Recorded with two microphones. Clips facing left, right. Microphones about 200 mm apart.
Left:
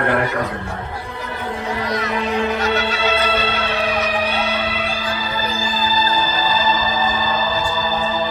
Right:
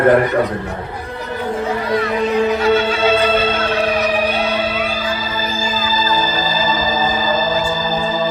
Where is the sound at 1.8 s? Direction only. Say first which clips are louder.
Right 5 dB; 40° left (ahead or behind).